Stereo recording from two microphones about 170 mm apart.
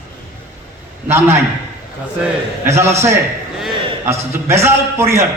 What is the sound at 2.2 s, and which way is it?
Speech, 15° right (ahead or behind).